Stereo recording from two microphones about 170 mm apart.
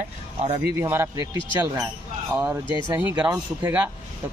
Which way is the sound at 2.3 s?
10° right (ahead or behind).